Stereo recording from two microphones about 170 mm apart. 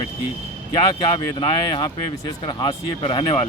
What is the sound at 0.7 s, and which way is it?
Speech, 30° left (ahead or behind).